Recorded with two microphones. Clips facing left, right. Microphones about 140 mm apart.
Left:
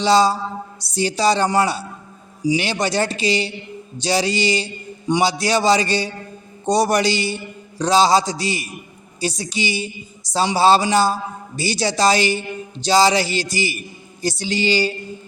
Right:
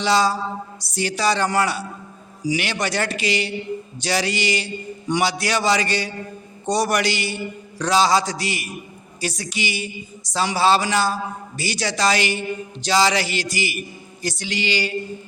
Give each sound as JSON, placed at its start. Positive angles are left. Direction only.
{"t": 0.0, "sound": "a man's voice", "side_deg": 30}